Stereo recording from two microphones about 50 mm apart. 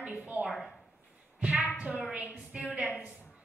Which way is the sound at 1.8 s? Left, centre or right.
Right.